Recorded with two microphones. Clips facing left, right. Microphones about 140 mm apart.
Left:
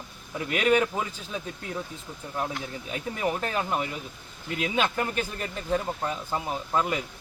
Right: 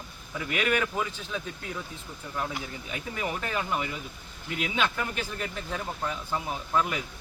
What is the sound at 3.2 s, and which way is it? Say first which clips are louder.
Speech: left 3 dB; 35° left (ahead or behind).